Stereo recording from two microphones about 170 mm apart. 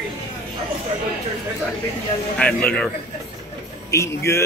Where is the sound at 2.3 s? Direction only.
10° left (ahead or behind).